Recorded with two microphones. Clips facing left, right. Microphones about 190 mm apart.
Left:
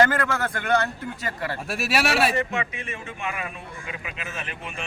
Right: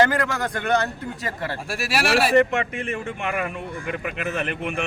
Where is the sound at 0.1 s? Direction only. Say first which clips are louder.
Right 1 dB; 15° right (ahead or behind).